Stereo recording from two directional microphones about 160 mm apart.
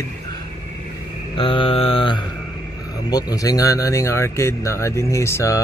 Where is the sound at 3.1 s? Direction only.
25° left (ahead or behind).